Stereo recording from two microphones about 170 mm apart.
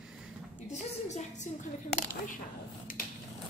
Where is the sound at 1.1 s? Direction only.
45° left (ahead or behind).